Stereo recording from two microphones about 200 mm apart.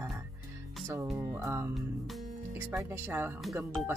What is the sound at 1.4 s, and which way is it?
Speech, 15° right (ahead or behind).